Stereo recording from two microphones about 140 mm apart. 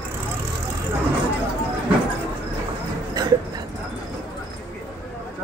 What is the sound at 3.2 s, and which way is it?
Dog, 30° right (ahead or behind).